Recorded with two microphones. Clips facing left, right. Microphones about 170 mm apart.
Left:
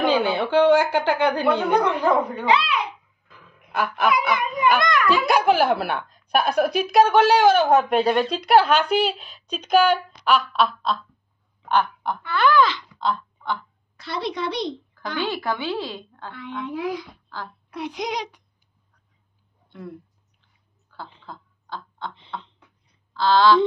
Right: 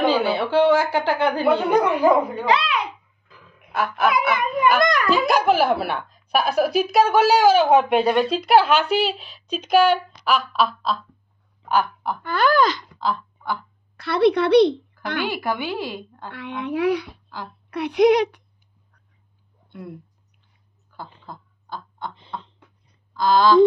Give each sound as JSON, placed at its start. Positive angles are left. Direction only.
{"t": 0.0, "sound": "a woman's voice", "side_deg": -5}
{"t": 2.4, "sound": "a child's voice", "side_deg": -40}
{"t": 3.7, "sound": "a woman's voice", "side_deg": 0}
{"t": 4.7, "sound": "a child's voice", "side_deg": -40}
{"t": 5.2, "sound": "a woman's voice", "side_deg": 0}
{"t": 11.7, "sound": "a sound", "side_deg": -5}
{"t": 12.2, "sound": "gasp", "side_deg": -45}
{"t": 13.0, "sound": "a sound", "side_deg": -5}
{"t": 13.9, "sound": "a child's voice", "side_deg": -60}
{"t": 15.2, "sound": "a woman's voice", "side_deg": -10}
{"t": 16.3, "sound": "a child's voice", "side_deg": -70}
{"t": 21.3, "sound": "a sound", "side_deg": -15}
{"t": 23.1, "sound": "a woman's voice", "side_deg": -15}